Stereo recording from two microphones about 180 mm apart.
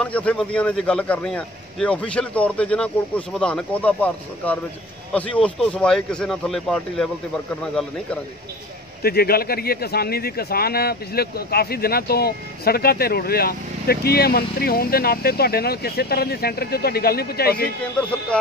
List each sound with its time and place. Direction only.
0.0 s speech: 5° left (ahead or behind)
9.0 s speech: 60° left (ahead or behind)
18.3 s speech: 5° left (ahead or behind)